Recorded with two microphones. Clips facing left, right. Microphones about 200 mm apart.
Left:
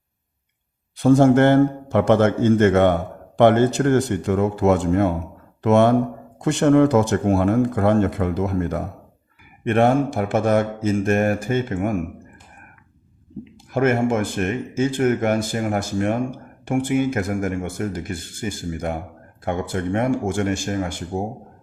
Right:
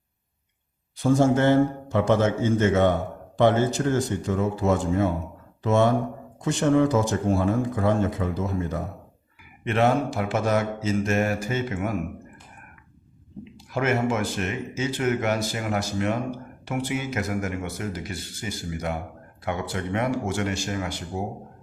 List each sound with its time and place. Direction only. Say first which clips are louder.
0.9 s a man's voice: left 6 dB; 65° left (ahead or behind)
9.6 s speech: left 5 dB; 50° left (ahead or behind)
13.6 s speech: left 5 dB; 50° left (ahead or behind)